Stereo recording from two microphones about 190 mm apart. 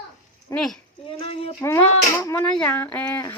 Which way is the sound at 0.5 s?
5° left (ahead or behind).